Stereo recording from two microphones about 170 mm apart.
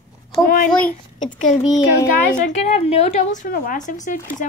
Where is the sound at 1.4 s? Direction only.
45° left (ahead or behind).